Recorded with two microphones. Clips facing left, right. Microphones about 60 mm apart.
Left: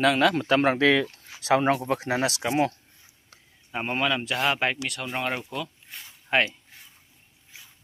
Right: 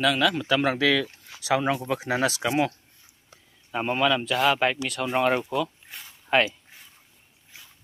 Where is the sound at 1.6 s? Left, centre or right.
Left.